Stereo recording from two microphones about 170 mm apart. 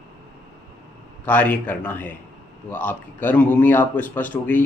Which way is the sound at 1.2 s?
10° left (ahead or behind).